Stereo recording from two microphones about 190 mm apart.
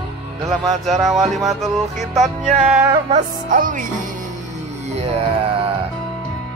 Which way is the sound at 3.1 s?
45° right (ahead or behind).